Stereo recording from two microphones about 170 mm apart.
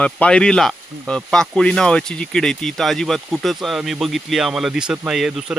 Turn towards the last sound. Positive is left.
turn(degrees=0)  # may be behind; listen again after turning